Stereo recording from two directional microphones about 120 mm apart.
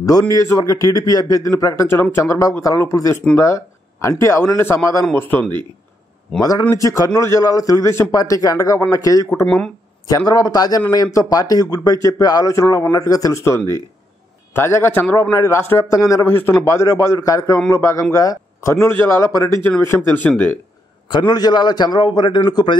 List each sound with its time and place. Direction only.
0.0 s a man's voice: 30° left (ahead or behind)
6.7 s a man's voice: 25° left (ahead or behind)
21.1 s speech: 40° left (ahead or behind)